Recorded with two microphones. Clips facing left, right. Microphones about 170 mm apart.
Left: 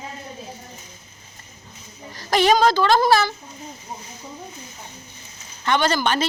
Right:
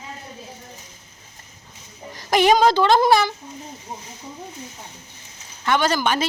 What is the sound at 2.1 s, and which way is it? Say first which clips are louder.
A child's voice: right 1 dB; 15° right (ahead or behind).